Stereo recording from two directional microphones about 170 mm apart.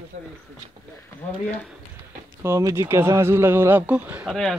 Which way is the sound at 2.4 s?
15° right (ahead or behind).